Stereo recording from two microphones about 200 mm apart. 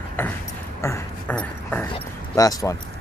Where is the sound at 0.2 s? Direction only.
10° left (ahead or behind).